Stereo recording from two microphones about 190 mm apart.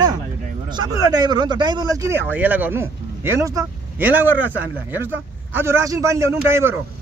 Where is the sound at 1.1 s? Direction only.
20° right (ahead or behind).